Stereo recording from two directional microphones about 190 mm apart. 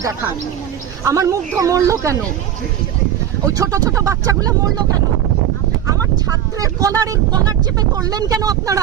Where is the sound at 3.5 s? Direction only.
15° right (ahead or behind).